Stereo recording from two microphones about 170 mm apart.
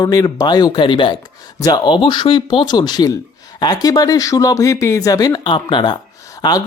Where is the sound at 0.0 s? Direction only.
20° left (ahead or behind).